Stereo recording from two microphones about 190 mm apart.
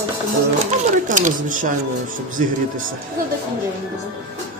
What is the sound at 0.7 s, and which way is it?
Speech, 40° right (ahead or behind).